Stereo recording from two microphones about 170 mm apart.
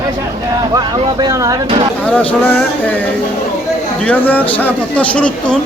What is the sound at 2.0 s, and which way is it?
Speech, 10° left (ahead or behind).